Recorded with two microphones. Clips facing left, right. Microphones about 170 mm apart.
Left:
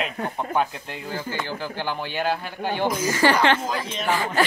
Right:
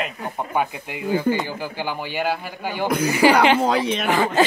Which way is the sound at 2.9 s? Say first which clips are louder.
Right 6 dB; 65° right (ahead or behind).